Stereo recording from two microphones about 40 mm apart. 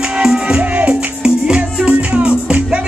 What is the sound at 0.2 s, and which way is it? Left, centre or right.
Music, centre.